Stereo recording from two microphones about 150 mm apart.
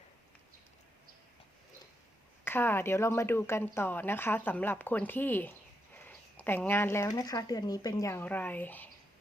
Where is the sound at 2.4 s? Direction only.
15° left (ahead or behind).